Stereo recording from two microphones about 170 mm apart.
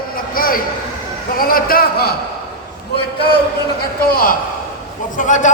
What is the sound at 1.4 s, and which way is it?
Speech, 60° left (ahead or behind).